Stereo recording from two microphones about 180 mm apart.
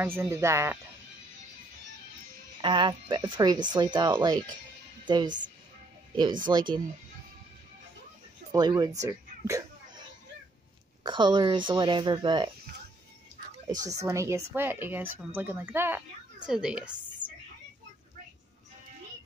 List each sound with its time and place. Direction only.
0.0 s speech: 15° right (ahead or behind)
2.6 s speech: 25° right (ahead or behind)
6.4 s speech: 25° right (ahead or behind)
8.5 s speech: 20° right (ahead or behind)
11.1 s speech: 25° right (ahead or behind)
13.8 s a woman's voice: 20° right (ahead or behind)